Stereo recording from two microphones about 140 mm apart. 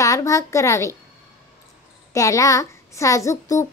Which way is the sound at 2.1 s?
25° left (ahead or behind).